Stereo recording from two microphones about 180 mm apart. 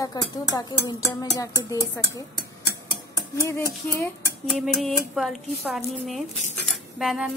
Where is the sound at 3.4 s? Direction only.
15° left (ahead or behind).